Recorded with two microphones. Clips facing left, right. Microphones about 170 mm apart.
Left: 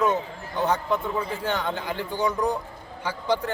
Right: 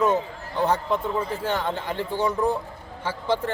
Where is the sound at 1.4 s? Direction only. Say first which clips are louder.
Right 1 dB; 5° right (ahead or behind).